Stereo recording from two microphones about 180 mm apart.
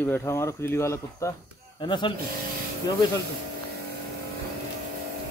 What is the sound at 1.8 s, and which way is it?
Speech, 25° left (ahead or behind).